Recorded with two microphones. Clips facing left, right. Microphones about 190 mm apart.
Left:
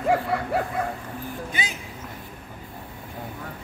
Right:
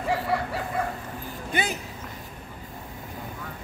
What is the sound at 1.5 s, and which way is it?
Speech, 55° right (ahead or behind).